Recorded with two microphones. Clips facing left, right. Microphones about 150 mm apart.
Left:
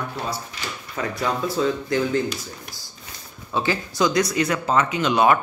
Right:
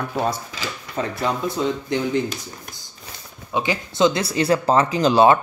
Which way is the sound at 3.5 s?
20° right (ahead or behind).